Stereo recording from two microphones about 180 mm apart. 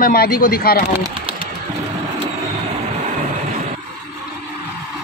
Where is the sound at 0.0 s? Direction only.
55° left (ahead or behind).